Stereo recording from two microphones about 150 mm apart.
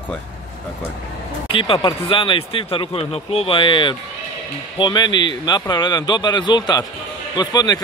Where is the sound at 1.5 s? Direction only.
35° left (ahead or behind).